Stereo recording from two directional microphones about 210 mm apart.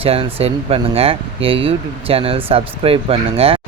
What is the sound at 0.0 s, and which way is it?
Speech, 25° right (ahead or behind).